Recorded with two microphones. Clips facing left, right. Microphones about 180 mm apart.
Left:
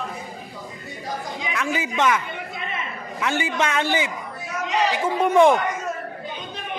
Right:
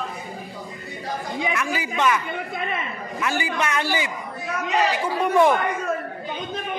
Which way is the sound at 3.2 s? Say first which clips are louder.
Left 2 dB; 20° left (ahead or behind).